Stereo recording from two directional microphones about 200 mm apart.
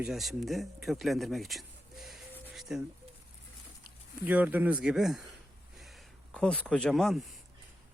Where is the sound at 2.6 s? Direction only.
Centre (ahead or behind).